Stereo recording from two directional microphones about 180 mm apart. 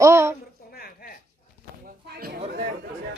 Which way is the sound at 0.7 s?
55° left (ahead or behind).